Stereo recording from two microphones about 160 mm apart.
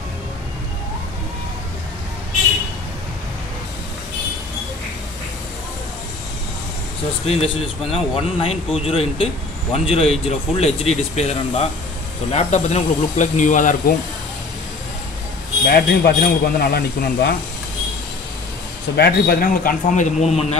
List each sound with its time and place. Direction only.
7.2 s speech: 40° left (ahead or behind); by 13.9 s 55° left (ahead or behind)
15.7 s speech: 80° left
18.9 s a man's voice: 80° left; by 20.5 s 45° left (ahead or behind)